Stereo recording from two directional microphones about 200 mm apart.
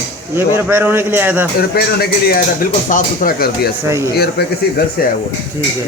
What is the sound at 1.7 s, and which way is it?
Speech, 50° left (ahead or behind).